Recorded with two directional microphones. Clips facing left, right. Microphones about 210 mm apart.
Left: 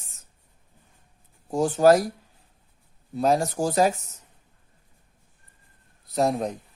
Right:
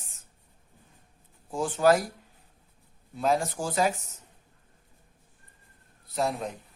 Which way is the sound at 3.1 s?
40° left (ahead or behind).